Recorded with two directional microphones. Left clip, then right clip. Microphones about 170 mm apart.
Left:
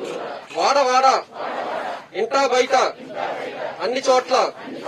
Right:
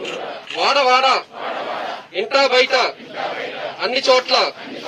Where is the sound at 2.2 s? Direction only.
70° left (ahead or behind).